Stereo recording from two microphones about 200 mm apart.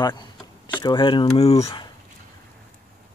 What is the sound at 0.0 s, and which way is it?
Speech, 20° left (ahead or behind).